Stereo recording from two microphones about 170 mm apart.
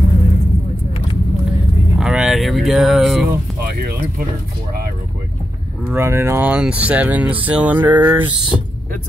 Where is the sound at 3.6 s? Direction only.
65° right (ahead or behind).